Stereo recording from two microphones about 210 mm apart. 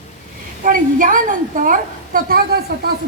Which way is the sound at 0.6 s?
40° right (ahead or behind).